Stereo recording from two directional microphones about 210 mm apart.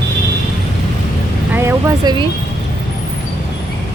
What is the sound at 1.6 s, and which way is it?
Speech, 15° right (ahead or behind).